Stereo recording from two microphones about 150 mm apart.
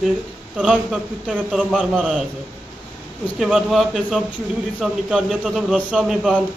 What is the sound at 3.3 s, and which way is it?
A man's voice, 5° right (ahead or behind).